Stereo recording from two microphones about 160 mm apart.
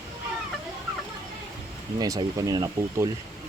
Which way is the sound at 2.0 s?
20° right (ahead or behind).